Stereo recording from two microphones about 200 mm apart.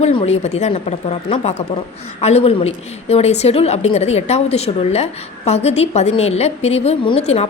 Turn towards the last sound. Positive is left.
turn(degrees=30)  # may be behind; listen again after turning